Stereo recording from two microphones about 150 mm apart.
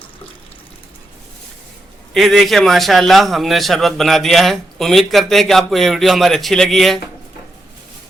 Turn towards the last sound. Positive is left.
turn(degrees=0)  # may be behind; listen again after turning